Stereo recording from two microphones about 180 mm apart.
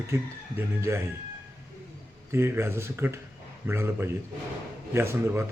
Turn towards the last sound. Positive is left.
turn(degrees=-15)  # may be behind; listen again after turning